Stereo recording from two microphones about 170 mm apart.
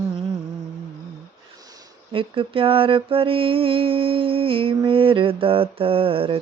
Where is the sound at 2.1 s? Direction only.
30° right (ahead or behind).